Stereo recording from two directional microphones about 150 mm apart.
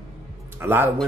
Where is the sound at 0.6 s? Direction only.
15° right (ahead or behind).